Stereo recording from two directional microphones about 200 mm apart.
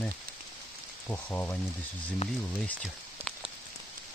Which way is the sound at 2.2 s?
30° left (ahead or behind).